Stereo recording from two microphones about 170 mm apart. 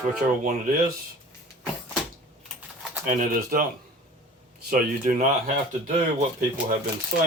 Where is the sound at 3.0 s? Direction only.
50° right (ahead or behind).